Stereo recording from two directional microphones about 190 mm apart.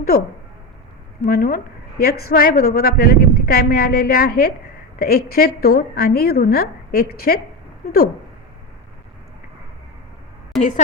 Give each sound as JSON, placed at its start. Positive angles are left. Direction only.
{"t": 1.2, "sound": "a woman's voice", "side_deg": 50}
{"t": 10.6, "sound": "a woman's voice", "side_deg": 40}